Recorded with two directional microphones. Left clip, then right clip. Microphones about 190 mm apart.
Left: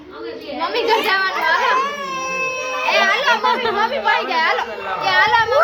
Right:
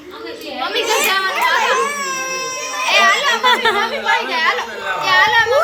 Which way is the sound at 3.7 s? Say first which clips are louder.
Even; 60° left (ahead or behind).